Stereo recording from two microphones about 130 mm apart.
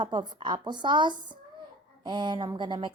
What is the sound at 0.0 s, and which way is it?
A woman's voice, 35° right (ahead or behind).